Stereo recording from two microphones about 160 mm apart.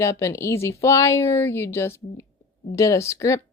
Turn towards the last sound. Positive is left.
turn(degrees=20)  # may be behind; listen again after turning